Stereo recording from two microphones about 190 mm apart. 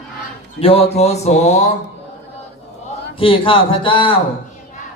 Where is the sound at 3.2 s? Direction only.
30° left (ahead or behind).